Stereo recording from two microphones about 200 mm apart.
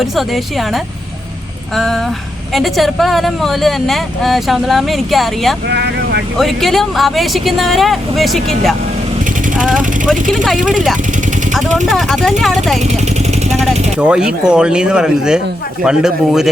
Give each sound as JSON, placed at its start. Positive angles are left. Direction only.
{"t": 0.0, "sound": "speech", "side_deg": 0}
{"t": 5.6, "sound": "speech", "side_deg": -55}
{"t": 6.3, "sound": "speech", "side_deg": 0}
{"t": 11.9, "sound": "speech", "side_deg": 0}
{"t": 12.8, "sound": "vehicle", "side_deg": -35}
{"t": 14.0, "sound": "speech", "side_deg": -5}